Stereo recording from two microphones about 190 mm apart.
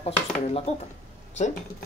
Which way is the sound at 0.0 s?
30° left (ahead or behind).